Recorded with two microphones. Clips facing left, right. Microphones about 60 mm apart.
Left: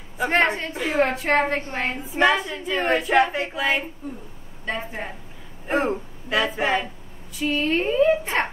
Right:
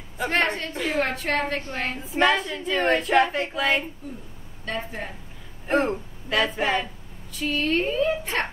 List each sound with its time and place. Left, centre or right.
0.2 s a woman's voice: centre
2.0 s a woman's voice: centre
4.6 s a woman's voice: centre
7.3 s a woman's voice: centre